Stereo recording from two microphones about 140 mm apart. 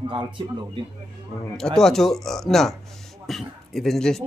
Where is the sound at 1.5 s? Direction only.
5° left (ahead or behind).